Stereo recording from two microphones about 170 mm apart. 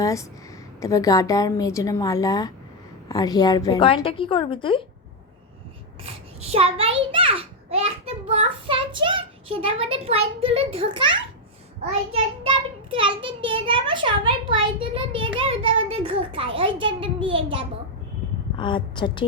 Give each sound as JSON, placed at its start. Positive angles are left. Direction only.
{"t": 0.0, "sound": "a sound", "side_deg": 20}
{"t": 0.8, "sound": "a woman's voice", "side_deg": 20}
{"t": 6.4, "sound": "a child's voice", "side_deg": -35}
{"t": 18.5, "sound": "a woman's voice", "side_deg": 30}